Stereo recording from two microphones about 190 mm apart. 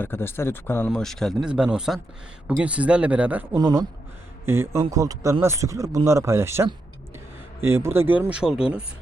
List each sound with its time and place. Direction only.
0.0 s speech: 10° left (ahead or behind); by 3.6 s 10° right (ahead or behind)
3.6 s speech: 20° right (ahead or behind)